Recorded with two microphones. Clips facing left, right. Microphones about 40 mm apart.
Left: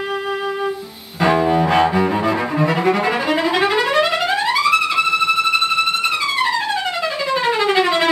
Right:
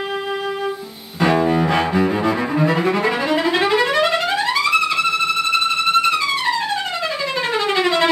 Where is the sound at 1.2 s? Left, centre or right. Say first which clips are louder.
Left 1 dB; centre.